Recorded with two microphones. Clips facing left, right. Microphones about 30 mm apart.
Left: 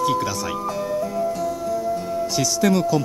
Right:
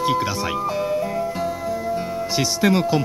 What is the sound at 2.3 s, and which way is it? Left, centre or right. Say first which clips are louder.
Speech: right 1 dB; right.